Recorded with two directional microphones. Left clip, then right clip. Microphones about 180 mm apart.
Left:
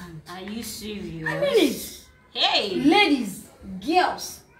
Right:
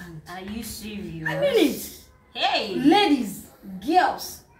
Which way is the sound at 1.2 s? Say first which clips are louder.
Right 1 dB; 5° left (ahead or behind).